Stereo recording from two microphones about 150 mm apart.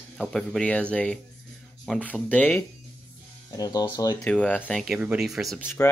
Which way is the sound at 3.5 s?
25° left (ahead or behind).